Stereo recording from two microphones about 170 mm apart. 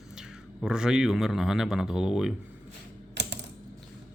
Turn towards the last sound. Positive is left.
turn(degrees=-90)